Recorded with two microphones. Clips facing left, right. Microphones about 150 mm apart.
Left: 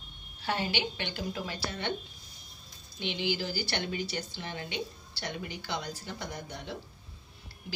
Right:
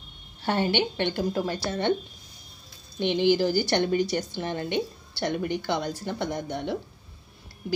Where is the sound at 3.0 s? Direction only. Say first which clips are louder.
Right 11 dB; 50° right (ahead or behind).